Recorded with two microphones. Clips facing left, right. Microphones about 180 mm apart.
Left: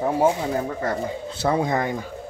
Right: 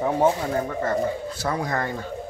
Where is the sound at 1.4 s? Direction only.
25° left (ahead or behind).